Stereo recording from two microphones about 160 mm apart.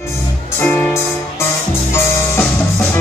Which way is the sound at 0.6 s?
10° left (ahead or behind).